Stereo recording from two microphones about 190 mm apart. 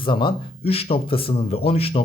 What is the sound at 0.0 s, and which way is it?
A man's voice, 25° left (ahead or behind).